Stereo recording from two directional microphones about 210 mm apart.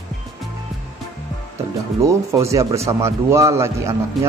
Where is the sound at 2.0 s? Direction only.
15° right (ahead or behind).